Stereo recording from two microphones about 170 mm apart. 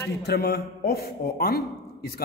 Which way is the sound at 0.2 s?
70° left (ahead or behind).